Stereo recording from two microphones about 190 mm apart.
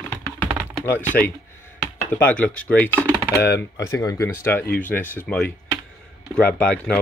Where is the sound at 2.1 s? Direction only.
10° left (ahead or behind).